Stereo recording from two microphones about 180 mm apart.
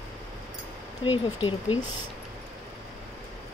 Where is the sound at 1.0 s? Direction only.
30° left (ahead or behind).